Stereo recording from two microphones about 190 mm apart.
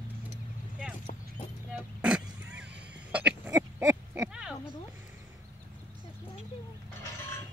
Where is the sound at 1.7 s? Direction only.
5° right (ahead or behind).